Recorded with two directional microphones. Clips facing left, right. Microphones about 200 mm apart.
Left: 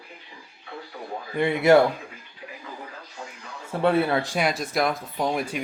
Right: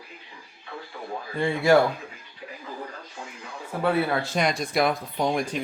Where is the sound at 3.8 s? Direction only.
25° left (ahead or behind).